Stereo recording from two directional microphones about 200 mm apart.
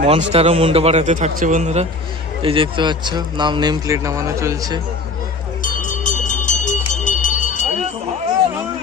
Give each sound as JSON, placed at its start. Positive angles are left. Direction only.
{"t": 0.0, "sound": "a man's voice", "side_deg": -35}
{"t": 5.6, "sound": "music", "side_deg": 40}